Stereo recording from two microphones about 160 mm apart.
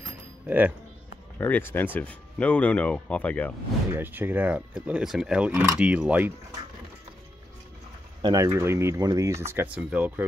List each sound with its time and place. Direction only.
0.5 s speech: 10° right (ahead or behind)
1.4 s speech: 15° left (ahead or behind)
3.9 s speech: 10° right (ahead or behind)
8.2 s speech: 25° right (ahead or behind)